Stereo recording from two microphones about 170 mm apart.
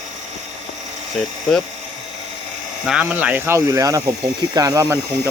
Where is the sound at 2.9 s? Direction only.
10° right (ahead or behind).